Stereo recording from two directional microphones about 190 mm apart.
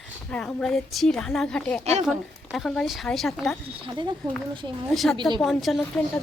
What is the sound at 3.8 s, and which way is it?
Speech, 25° right (ahead or behind).